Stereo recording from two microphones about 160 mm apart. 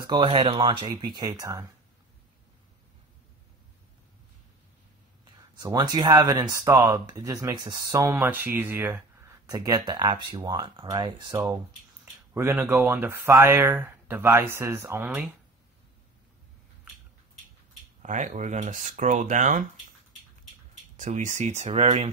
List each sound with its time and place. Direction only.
0.0 s speech: 30° right (ahead or behind)
5.2 s speech: 25° right (ahead or behind)
12.0 s speech: 15° right (ahead or behind)
18.0 s speech: 50° right (ahead or behind)
20.9 s speech: 50° right (ahead or behind)